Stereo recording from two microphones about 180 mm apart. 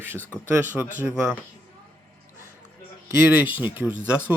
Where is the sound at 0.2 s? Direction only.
10° left (ahead or behind).